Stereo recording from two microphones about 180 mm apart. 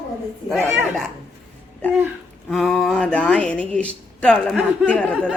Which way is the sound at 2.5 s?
Centre (ahead or behind).